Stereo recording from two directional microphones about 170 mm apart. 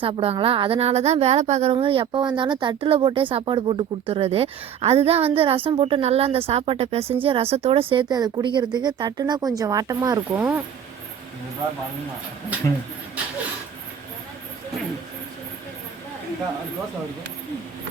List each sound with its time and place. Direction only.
0.0 s speech: 35° right (ahead or behind)